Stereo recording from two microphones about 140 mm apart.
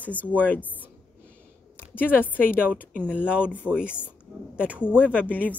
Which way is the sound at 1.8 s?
15° left (ahead or behind).